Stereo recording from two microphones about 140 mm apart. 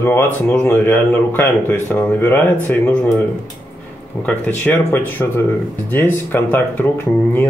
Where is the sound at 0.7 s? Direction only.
15° left (ahead or behind).